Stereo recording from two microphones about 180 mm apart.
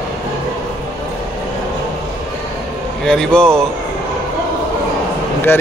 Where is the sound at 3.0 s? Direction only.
5° left (ahead or behind).